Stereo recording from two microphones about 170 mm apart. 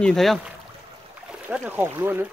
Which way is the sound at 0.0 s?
Centre (ahead or behind).